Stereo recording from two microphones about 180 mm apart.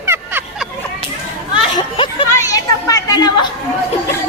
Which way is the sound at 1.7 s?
30° left (ahead or behind).